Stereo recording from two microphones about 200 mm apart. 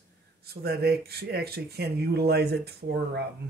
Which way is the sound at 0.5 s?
50° right (ahead or behind).